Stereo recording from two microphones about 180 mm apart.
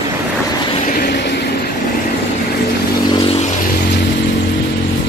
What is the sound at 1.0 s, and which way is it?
Vehicle, 65° left (ahead or behind).